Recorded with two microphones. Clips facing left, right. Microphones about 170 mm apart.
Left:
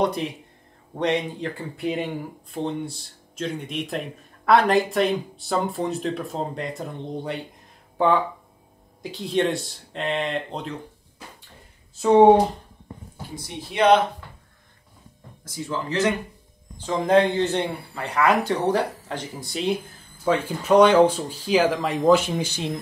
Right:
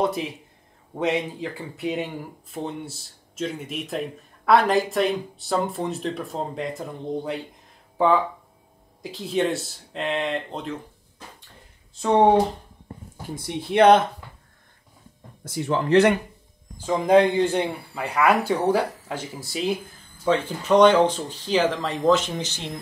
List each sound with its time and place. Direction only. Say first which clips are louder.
0.0 s speech: left 1 dB; 5° right (ahead or behind)
9.0 s speech: left 1 dB; centre (ahead or behind)
13.7 s speech: right 2 dB; 55° right (ahead or behind)
15.4 s speech: right 5 dB; 65° right (ahead or behind)
16.7 s speech: right 1 dB; 10° right (ahead or behind)
20.2 s speech: even; 10° left (ahead or behind)